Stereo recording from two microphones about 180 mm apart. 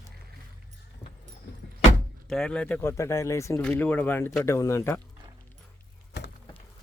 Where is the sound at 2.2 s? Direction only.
5° left (ahead or behind).